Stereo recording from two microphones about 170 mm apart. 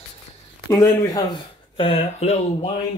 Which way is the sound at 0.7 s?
20° left (ahead or behind).